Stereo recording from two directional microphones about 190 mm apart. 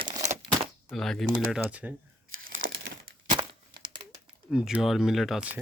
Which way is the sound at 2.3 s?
90° right.